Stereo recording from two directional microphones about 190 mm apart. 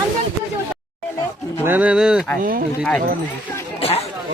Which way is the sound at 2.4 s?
50° right (ahead or behind).